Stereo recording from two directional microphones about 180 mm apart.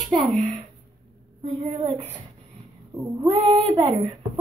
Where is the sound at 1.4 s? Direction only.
25° right (ahead or behind).